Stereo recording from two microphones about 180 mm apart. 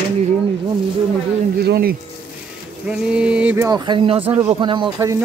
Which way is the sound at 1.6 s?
60° right (ahead or behind).